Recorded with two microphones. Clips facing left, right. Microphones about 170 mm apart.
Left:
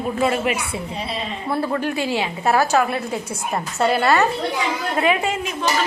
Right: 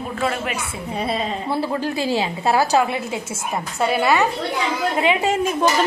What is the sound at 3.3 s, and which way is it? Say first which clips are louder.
Speech: left 1 dB; centre (ahead or behind).